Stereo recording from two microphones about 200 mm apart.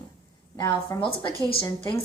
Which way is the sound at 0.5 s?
15° left (ahead or behind).